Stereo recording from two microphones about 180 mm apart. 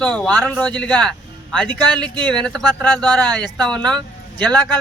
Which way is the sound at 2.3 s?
5° left (ahead or behind).